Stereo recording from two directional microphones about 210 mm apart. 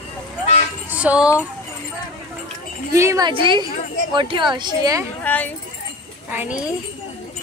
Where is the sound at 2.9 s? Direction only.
15° right (ahead or behind).